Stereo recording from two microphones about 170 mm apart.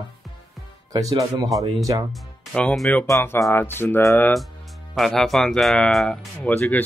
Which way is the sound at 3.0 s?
20° left (ahead or behind).